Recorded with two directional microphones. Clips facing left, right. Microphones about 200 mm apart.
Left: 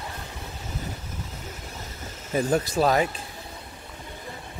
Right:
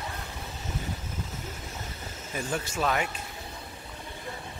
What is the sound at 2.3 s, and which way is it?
Speech, 40° left (ahead or behind).